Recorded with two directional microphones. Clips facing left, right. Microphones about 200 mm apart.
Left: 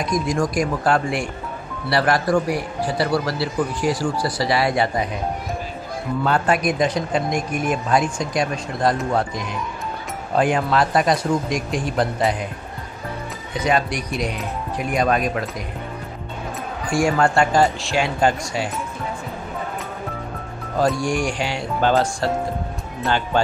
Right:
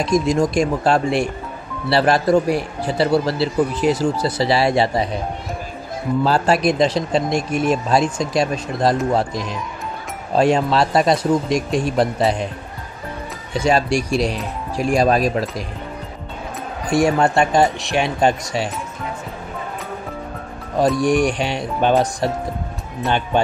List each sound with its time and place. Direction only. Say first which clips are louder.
0.0 s speech: right 4 dB; 25° right (ahead or behind)
6.2 s speech: right 2 dB; 30° right (ahead or behind)
13.5 s speech: right 4 dB; 30° right (ahead or behind)
16.8 s speech: right 3 dB; 20° right (ahead or behind)
21.0 s speech: right 5 dB; 20° right (ahead or behind)